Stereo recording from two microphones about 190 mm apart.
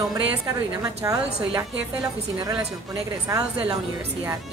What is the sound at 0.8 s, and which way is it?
A woman's voice, 20° right (ahead or behind).